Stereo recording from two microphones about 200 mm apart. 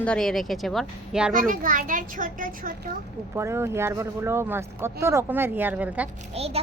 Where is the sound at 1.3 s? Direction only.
45° right (ahead or behind).